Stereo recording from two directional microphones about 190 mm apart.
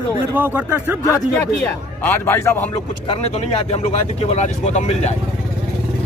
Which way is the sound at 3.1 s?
35° left (ahead or behind).